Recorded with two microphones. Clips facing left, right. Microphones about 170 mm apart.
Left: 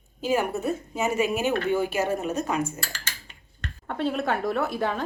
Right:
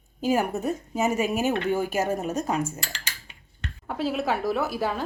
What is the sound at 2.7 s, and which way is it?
Dishes, 15° right (ahead or behind).